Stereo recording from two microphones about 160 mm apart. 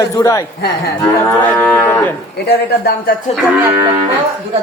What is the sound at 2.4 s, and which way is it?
Speech, 80° left.